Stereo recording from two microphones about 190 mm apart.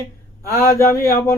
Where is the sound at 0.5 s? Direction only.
50° left (ahead or behind).